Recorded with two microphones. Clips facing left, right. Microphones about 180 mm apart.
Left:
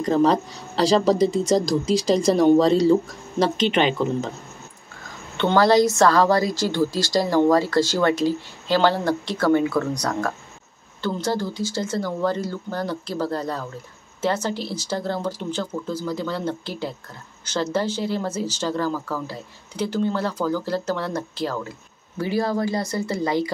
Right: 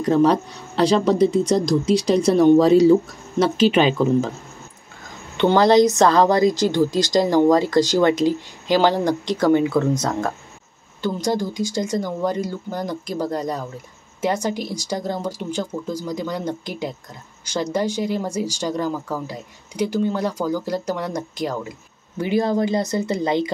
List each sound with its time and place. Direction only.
0.0 s a woman's voice: centre (ahead or behind)
5.4 s a woman's voice: 20° right (ahead or behind)